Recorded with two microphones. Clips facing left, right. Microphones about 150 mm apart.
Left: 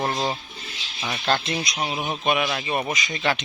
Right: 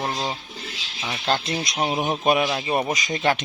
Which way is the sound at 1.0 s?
Centre (ahead or behind).